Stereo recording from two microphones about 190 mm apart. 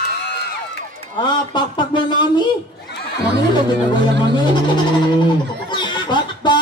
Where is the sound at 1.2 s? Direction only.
25° left (ahead or behind).